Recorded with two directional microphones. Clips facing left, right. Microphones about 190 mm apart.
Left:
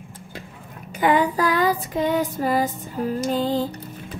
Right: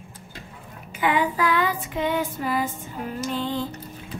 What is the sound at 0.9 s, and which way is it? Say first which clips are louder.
Child singing: left 4 dB; 40° left (ahead or behind).